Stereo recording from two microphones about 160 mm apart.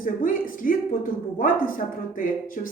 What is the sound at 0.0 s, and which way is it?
Speech, 60° left (ahead or behind).